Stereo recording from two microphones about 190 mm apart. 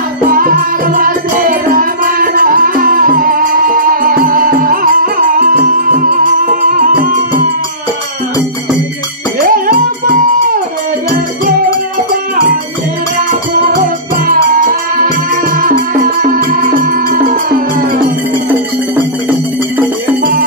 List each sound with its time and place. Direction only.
0.3 s music: 45° right (ahead or behind)
9.4 s music: 45° right (ahead or behind)
13.7 s music: 45° right (ahead or behind)